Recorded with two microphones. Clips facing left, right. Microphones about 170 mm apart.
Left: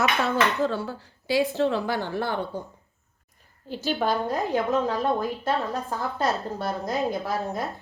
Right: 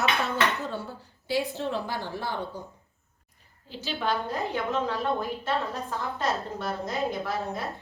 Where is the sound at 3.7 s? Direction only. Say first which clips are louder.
Left 5 dB; 50° left (ahead or behind).